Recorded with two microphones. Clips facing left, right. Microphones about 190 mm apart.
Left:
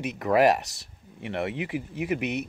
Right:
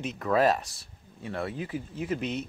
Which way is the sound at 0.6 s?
75° left (ahead or behind).